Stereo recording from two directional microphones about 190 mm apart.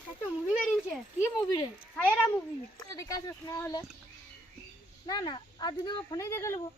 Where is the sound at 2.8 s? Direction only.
20° left (ahead or behind).